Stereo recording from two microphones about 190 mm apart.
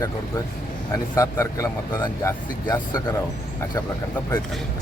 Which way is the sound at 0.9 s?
15° left (ahead or behind).